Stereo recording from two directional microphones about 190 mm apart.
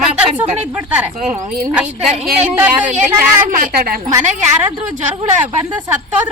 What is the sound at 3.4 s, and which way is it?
Speech, 45° right (ahead or behind).